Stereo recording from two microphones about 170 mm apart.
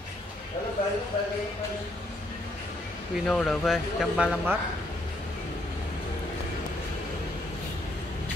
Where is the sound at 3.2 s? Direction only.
5° left (ahead or behind).